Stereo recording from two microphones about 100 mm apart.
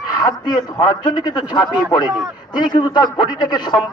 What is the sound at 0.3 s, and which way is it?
A man's voice, 45° left (ahead or behind).